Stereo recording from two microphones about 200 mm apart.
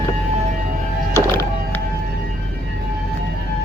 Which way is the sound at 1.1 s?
15° left (ahead or behind).